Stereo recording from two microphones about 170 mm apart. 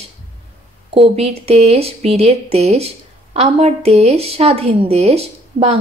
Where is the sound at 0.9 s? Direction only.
35° right (ahead or behind).